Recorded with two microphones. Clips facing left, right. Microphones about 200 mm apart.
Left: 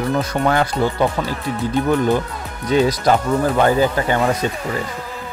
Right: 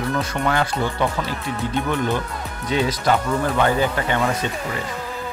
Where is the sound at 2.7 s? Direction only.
40° left (ahead or behind).